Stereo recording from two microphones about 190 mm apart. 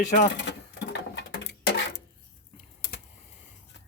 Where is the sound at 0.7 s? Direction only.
65° left (ahead or behind).